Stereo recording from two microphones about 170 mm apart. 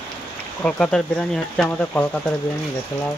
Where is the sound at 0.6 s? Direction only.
5° left (ahead or behind).